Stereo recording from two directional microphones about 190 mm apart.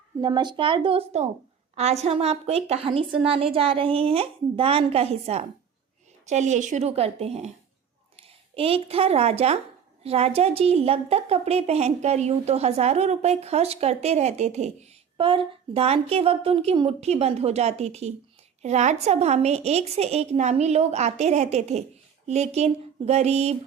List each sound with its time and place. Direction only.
0.2 s a woman's voice: 25° right (ahead or behind)